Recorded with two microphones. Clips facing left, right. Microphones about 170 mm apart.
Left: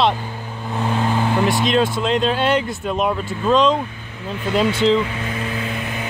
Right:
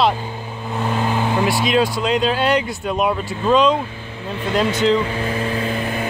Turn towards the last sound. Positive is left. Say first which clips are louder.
# even
turn(degrees=0)  # may be behind; listen again after turning